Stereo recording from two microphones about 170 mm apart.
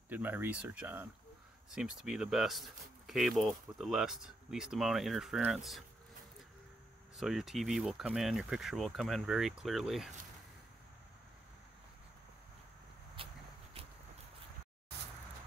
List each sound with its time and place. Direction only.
0.1 s speech: 10° right (ahead or behind)
7.2 s speech: centre (ahead or behind)
13.2 s walk: 30° right (ahead or behind)